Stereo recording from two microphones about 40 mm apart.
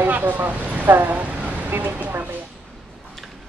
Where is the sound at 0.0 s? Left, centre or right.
Right.